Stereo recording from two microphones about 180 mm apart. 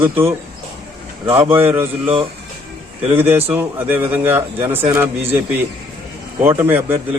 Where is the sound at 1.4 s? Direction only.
10° right (ahead or behind).